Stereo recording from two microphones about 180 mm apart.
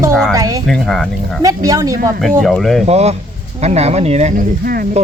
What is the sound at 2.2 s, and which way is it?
Speech, centre (ahead or behind).